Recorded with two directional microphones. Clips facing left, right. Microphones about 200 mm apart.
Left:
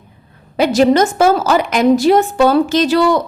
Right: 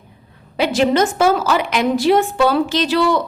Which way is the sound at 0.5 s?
40° left (ahead or behind).